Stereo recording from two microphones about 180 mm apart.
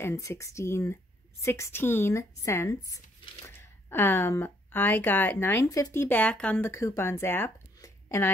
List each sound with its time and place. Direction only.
0.0 s speech: 15° left (ahead or behind)